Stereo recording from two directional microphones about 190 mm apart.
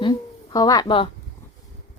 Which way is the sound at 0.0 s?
20° left (ahead or behind).